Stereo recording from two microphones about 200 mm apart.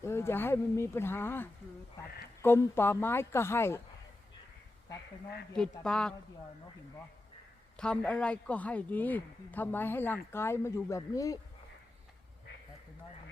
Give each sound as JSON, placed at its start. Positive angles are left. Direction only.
{"t": 0.0, "sound": "speech", "side_deg": 15}
{"t": 5.8, "sound": "speech", "side_deg": 5}
{"t": 7.8, "sound": "speech", "side_deg": 5}